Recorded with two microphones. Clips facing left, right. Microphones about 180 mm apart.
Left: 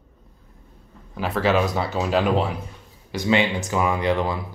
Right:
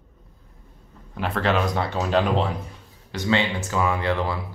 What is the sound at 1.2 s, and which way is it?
Speech, 5° left (ahead or behind).